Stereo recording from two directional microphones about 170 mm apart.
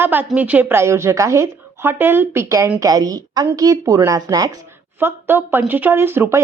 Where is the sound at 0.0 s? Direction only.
10° right (ahead or behind).